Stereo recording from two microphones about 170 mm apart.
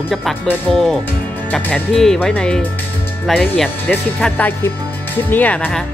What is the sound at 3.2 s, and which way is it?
Speech, centre (ahead or behind).